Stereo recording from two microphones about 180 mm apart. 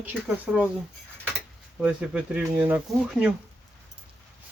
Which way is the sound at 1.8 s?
5° right (ahead or behind).